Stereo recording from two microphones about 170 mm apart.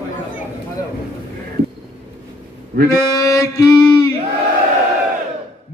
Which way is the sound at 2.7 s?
55° right (ahead or behind).